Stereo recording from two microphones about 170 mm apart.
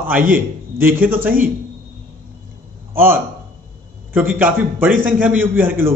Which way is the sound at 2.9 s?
55° right (ahead or behind).